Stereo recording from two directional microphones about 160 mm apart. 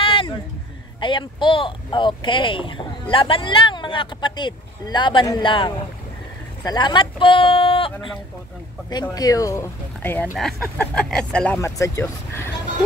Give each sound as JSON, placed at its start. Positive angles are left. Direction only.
{"t": 0.0, "sound": "a sound", "side_deg": 35}
{"t": 1.0, "sound": "speech", "side_deg": 30}
{"t": 9.1, "sound": "speech", "side_deg": 20}
{"t": 10.3, "sound": "speech", "side_deg": 0}
{"t": 11.6, "sound": "speech", "side_deg": 20}